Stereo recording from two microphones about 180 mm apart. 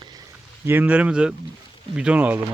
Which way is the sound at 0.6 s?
10° right (ahead or behind).